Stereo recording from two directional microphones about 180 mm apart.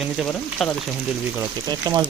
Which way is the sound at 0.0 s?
Centre (ahead or behind).